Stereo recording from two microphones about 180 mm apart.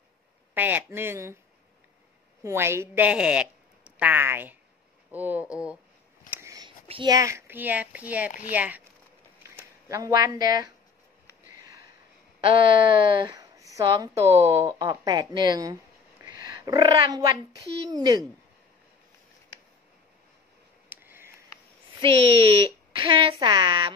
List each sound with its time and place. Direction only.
0.6 s a woman's voice: 10° right (ahead or behind)
2.4 s a woman's voice: 15° right (ahead or behind)
6.3 s whispering: 20° right (ahead or behind)
6.9 s a woman's voice: 25° right (ahead or behind); by 8.8 s 10° right (ahead or behind)
9.8 s speech: 20° right (ahead or behind)
13.1 s speech: 25° right (ahead or behind)
16.2 s a sound: 20° right (ahead or behind)
17.8 s speech: 20° right (ahead or behind)
20.9 s a sound: 10° right (ahead or behind)
22.0 s speech: 30° right (ahead or behind)